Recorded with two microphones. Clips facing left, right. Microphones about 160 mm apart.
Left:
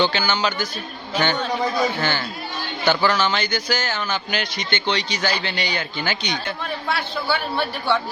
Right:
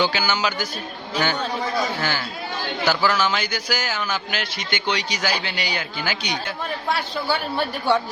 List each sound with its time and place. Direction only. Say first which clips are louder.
0.0 s speech: left 1 dB; 10° right (ahead or behind)
2.0 s speech: left 2 dB; 10° right (ahead or behind)
6.8 s a man's voice: even; 40° right (ahead or behind)